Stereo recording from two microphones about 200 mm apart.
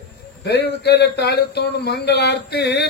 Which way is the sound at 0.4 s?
55° left (ahead or behind).